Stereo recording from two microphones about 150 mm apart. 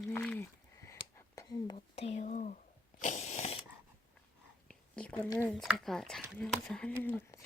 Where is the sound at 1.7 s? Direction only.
45° left (ahead or behind).